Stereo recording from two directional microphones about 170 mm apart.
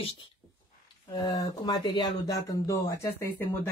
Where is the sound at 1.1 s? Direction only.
25° left (ahead or behind).